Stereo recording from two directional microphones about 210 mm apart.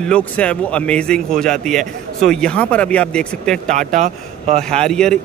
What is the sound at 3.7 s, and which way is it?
Speech, 35° right (ahead or behind).